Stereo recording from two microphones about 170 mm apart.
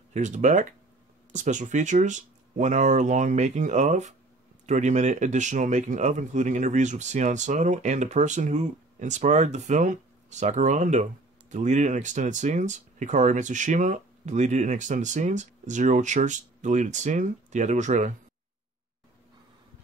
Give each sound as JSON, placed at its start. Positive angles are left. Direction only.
{"t": 0.1, "sound": "speech", "side_deg": -45}